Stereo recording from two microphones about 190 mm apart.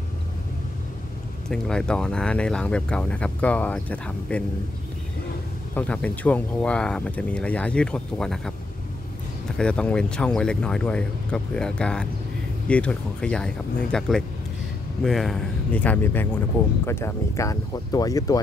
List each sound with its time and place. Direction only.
1.5 s speech: 5° left (ahead or behind)
5.8 s speech: 5° left (ahead or behind)
9.6 s speech: 5° left (ahead or behind)